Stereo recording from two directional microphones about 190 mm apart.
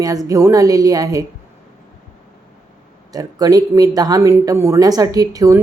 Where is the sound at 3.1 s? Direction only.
20° right (ahead or behind).